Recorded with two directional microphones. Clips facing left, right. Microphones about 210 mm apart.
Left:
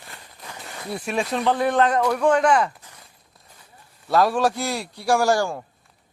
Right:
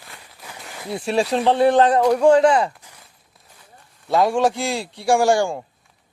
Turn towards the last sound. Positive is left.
turn(degrees=-25)  # may be behind; listen again after turning